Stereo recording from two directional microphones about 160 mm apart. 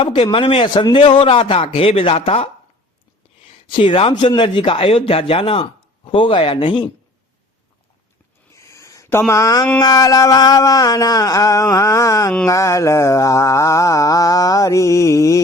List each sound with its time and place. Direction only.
0.0 s a man's voice: 30° left (ahead or behind)
3.7 s a man's voice: 35° left (ahead or behind)
8.5 s a sound: 20° left (ahead or behind)
9.3 s mantra: 20° left (ahead or behind)